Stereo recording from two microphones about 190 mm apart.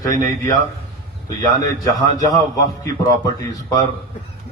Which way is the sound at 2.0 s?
35° right (ahead or behind).